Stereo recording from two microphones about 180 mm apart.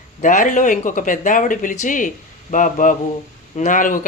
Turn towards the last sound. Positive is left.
turn(degrees=45)  # may be behind; listen again after turning